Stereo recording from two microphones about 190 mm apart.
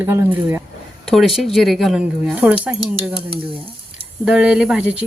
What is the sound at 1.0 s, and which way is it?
Speech, centre (ahead or behind).